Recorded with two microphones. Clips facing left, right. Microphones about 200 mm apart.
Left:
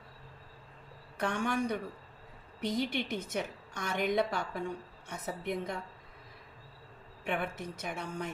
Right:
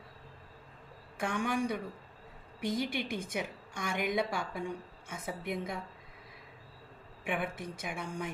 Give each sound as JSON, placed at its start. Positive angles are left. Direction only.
{"t": 1.2, "sound": "a woman's voice", "side_deg": -10}
{"t": 7.3, "sound": "a woman's voice", "side_deg": -10}